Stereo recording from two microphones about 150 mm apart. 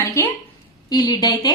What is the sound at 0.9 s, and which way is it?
Speech, 30° left (ahead or behind).